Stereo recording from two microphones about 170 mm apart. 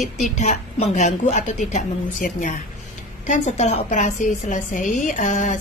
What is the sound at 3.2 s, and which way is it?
A woman's voice, 45° left (ahead or behind).